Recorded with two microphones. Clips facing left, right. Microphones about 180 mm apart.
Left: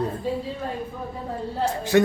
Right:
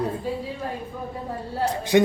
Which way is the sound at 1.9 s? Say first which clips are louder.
Right 1 dB; 20° right (ahead or behind).